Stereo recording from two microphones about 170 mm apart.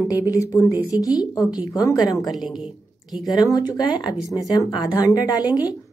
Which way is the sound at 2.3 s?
5° right (ahead or behind).